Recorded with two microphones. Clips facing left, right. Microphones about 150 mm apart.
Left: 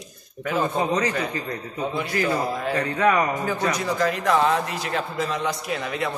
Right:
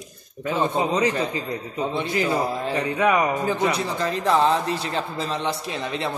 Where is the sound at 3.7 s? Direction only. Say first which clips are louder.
Left 1 dB; 30° right (ahead or behind).